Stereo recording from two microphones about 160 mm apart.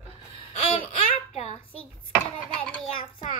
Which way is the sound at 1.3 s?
40° left (ahead or behind).